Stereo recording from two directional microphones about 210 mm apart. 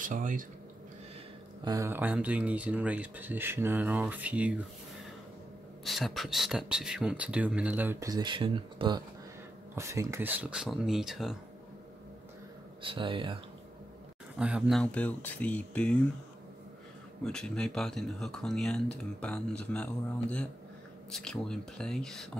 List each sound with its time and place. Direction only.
0.0 s speech: 40° right (ahead or behind)
1.6 s speech: 15° right (ahead or behind)
5.9 s speech: centre (ahead or behind)
12.8 s speech: 25° right (ahead or behind)
14.4 s speech: centre (ahead or behind)
17.2 s speech: 5° left (ahead or behind)